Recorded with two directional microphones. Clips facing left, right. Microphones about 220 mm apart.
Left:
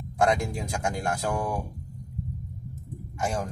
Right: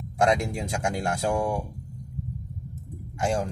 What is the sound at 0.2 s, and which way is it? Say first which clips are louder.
Speech: right 1 dB; 25° right (ahead or behind).